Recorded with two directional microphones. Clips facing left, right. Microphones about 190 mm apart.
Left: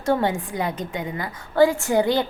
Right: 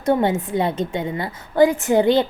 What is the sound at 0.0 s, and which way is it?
A woman's voice, 20° right (ahead or behind).